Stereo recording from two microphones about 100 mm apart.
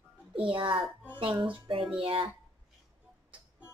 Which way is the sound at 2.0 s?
65° right (ahead or behind).